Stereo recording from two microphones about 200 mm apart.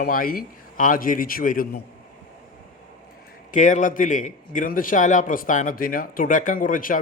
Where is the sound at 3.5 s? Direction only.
40° left (ahead or behind).